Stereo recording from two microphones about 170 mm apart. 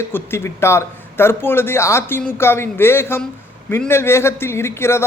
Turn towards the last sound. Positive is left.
turn(degrees=15)  # may be behind; listen again after turning